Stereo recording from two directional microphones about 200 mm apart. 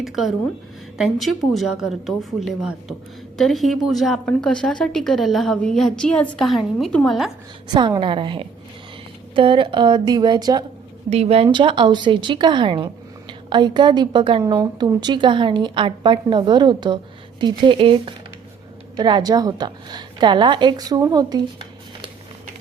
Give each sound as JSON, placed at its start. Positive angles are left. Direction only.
{"t": 0.0, "sound": "a woman's voice", "side_deg": 0}
{"t": 7.7, "sound": "speech", "side_deg": -25}
{"t": 11.1, "sound": "a woman's voice", "side_deg": -30}